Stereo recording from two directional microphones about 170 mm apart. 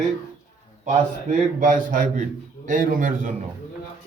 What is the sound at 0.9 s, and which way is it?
A man's voice, 50° right (ahead or behind).